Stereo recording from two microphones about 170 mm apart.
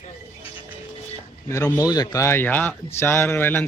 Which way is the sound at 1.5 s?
15° left (ahead or behind).